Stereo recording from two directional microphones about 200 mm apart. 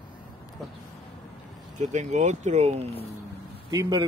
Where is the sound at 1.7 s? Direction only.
35° right (ahead or behind).